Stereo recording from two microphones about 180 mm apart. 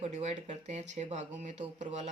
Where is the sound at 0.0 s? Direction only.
35° right (ahead or behind).